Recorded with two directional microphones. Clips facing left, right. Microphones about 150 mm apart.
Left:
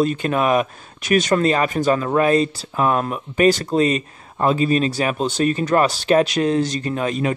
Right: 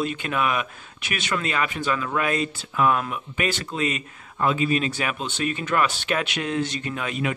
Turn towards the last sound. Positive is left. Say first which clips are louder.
# left 6 dB
turn(degrees=35)  # may be behind; listen again after turning